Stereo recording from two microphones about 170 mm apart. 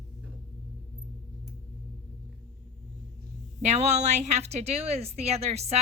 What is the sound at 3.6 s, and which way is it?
A woman's voice, 40° right (ahead or behind).